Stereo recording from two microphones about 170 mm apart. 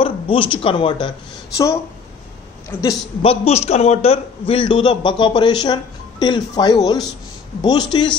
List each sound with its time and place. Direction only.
0.0 s speech: 30° left (ahead or behind)
2.7 s a woman's voice: 10° left (ahead or behind)
3.2 s a man's voice: 35° left (ahead or behind)